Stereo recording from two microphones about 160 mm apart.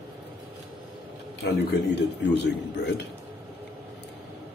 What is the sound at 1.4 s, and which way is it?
A man's voice, 90° left.